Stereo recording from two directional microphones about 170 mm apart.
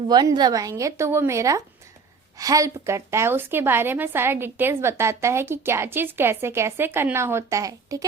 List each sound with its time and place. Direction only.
0.1 s a woman's voice: 25° right (ahead or behind)